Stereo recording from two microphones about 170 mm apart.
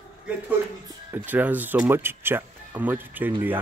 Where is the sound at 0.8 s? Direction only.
10° right (ahead or behind).